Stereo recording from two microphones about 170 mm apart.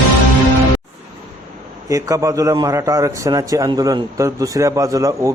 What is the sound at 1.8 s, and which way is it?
A man's voice, 20° right (ahead or behind).